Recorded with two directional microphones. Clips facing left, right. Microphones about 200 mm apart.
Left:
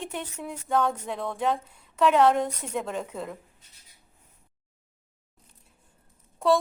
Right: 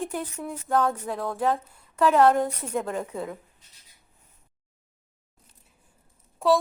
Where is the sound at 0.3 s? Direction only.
5° left (ahead or behind).